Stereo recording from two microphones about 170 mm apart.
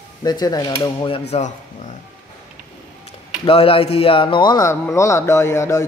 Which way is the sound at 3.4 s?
35° left (ahead or behind).